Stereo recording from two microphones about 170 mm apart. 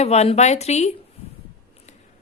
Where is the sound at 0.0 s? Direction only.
40° left (ahead or behind).